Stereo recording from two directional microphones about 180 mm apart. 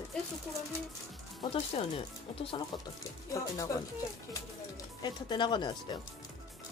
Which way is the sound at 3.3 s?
20° left (ahead or behind).